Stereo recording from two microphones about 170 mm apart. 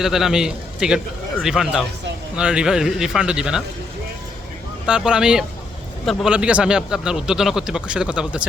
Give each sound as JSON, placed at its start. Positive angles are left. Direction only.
{"t": 0.0, "sound": "speech", "side_deg": 0}
{"t": 4.9, "sound": "speech", "side_deg": -5}